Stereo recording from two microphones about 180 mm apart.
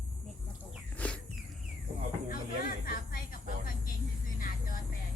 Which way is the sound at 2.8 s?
55° left (ahead or behind).